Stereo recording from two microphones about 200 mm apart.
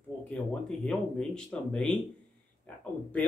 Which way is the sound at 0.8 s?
5° left (ahead or behind).